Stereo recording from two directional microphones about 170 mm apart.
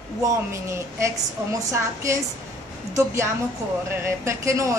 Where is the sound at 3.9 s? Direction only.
15° right (ahead or behind).